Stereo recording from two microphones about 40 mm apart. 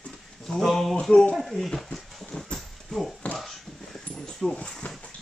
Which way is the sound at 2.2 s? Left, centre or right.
Centre.